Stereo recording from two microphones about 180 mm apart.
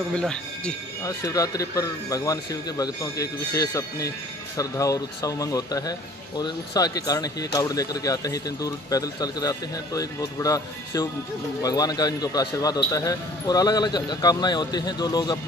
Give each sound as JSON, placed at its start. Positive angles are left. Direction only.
{"t": 0.1, "sound": "speech", "side_deg": 5}
{"t": 1.0, "sound": "speech", "side_deg": 20}